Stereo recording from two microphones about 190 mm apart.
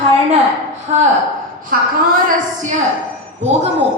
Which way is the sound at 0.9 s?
40° right (ahead or behind).